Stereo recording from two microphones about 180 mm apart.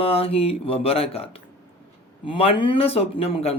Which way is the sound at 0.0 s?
30° left (ahead or behind).